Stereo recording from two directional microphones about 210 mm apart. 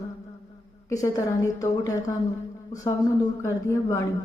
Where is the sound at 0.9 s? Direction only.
15° left (ahead or behind).